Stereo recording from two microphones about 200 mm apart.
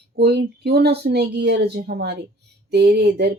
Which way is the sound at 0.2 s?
55° right (ahead or behind).